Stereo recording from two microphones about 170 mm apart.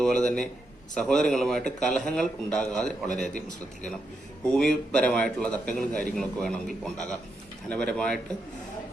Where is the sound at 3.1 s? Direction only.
45° left (ahead or behind).